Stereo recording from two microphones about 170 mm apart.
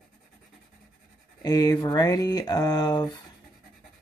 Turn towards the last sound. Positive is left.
turn(degrees=25)  # may be behind; listen again after turning